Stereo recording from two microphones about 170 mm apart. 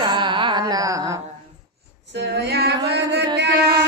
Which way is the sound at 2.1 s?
85° right.